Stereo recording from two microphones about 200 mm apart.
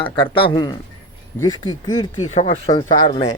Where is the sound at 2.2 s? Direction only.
35° left (ahead or behind).